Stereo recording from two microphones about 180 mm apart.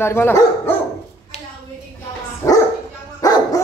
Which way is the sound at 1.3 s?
35° left (ahead or behind).